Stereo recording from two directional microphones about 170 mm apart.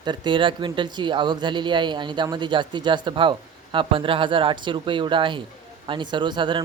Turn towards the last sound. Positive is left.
turn(degrees=-30)  # may be behind; listen again after turning